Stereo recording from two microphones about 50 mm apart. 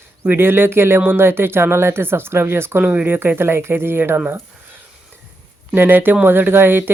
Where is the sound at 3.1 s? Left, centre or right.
Right.